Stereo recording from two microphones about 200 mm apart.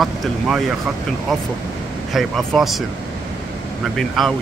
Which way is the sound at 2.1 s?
Centre (ahead or behind).